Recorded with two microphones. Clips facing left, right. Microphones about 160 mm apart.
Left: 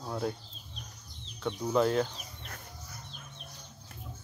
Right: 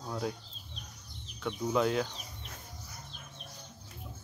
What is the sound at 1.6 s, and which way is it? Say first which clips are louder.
Speech: left 2 dB; centre (ahead or behind).